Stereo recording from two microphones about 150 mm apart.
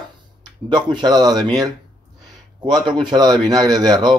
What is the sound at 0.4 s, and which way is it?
Speech, 30° right (ahead or behind).